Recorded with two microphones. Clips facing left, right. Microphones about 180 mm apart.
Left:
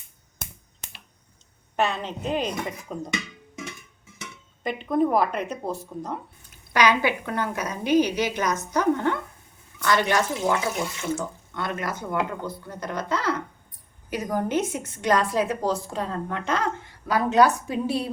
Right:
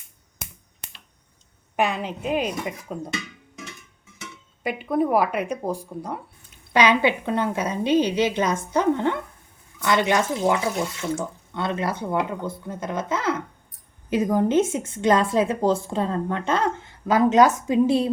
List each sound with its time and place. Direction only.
1.7 s speech: 10° right (ahead or behind)
4.6 s speech: 10° right (ahead or behind)
6.7 s a woman's voice: 25° right (ahead or behind)